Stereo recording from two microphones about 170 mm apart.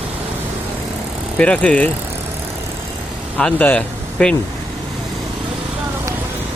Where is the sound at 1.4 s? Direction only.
5° left (ahead or behind).